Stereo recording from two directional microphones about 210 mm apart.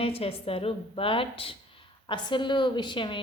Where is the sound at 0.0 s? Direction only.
25° left (ahead or behind).